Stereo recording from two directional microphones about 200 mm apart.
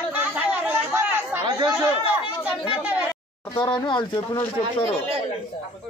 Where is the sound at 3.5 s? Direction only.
25° left (ahead or behind).